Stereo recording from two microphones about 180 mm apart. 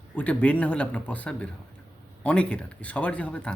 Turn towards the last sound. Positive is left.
turn(degrees=5)  # may be behind; listen again after turning